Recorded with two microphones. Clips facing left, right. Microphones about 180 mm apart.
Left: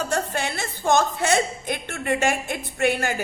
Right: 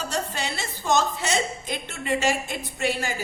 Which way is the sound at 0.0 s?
55° left (ahead or behind).